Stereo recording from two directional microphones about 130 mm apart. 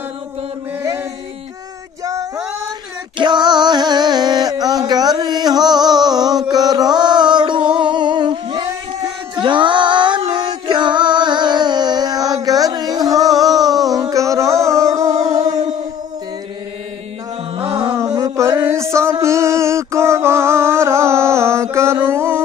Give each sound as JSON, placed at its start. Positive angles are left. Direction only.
{"t": 3.2, "sound": "music", "side_deg": -35}
{"t": 6.5, "sound": "a sound", "side_deg": -30}
{"t": 10.3, "sound": "music", "side_deg": -35}
{"t": 15.1, "sound": "music", "side_deg": -55}
{"t": 17.9, "sound": "music", "side_deg": -25}